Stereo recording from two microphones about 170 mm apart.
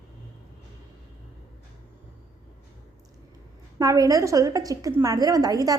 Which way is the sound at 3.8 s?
20° right (ahead or behind).